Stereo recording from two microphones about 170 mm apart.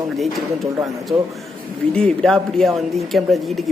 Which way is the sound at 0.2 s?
Centre (ahead or behind).